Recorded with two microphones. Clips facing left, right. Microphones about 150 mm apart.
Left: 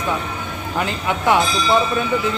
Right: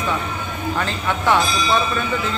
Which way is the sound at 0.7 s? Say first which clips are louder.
Left 4 dB; 15° left (ahead or behind).